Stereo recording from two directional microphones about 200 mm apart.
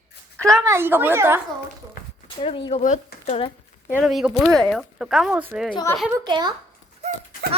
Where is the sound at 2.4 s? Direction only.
30° left (ahead or behind).